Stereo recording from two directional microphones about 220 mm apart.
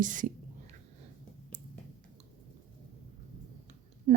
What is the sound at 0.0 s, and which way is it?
Speech, 35° right (ahead or behind).